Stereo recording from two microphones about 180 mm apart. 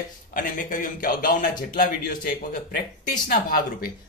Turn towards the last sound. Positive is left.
turn(degrees=55)  # may be behind; listen again after turning